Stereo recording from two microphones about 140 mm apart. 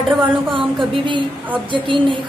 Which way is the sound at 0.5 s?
35° right (ahead or behind).